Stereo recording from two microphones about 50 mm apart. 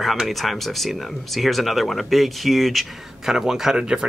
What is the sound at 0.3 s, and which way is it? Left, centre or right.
Speech, centre.